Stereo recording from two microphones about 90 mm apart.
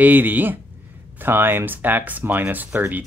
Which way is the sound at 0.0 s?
20° right (ahead or behind).